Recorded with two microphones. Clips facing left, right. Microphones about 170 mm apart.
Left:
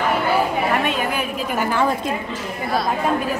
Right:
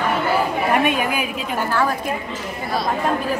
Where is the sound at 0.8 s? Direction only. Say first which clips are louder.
Right 2 dB; 10° right (ahead or behind).